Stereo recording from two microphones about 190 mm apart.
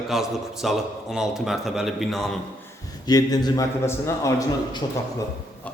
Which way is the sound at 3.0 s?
20° left (ahead or behind).